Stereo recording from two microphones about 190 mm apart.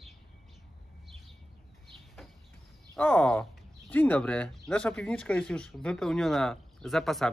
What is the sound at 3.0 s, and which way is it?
Speech, 10° left (ahead or behind).